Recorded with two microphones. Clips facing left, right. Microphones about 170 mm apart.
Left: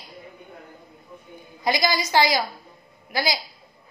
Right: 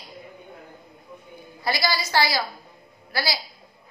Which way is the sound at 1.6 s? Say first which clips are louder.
Left 3 dB; 20° left (ahead or behind).